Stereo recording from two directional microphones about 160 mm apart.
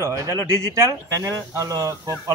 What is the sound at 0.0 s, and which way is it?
A man's voice, 20° right (ahead or behind).